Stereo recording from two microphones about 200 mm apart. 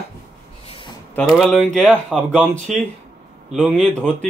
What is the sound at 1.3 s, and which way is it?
Speech, centre (ahead or behind).